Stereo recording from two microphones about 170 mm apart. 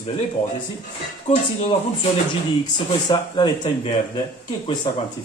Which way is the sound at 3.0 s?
25° left (ahead or behind).